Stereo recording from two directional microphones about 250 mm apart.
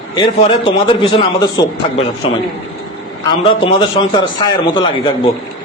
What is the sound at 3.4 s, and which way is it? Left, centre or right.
A man's voice, left.